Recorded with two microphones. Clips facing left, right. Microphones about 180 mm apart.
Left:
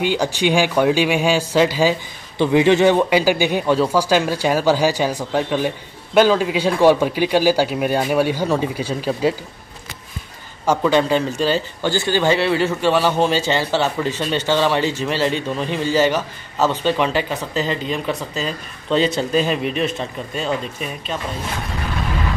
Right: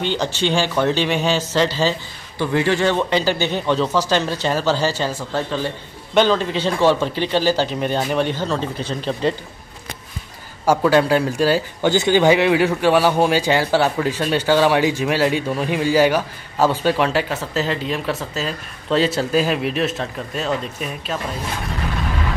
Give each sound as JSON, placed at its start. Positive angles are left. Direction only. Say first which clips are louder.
{"t": 0.0, "sound": "speech", "louder": "left 2 dB", "side_deg": 10}
{"t": 10.6, "sound": "a man's voice", "louder": "right 1 dB", "side_deg": -5}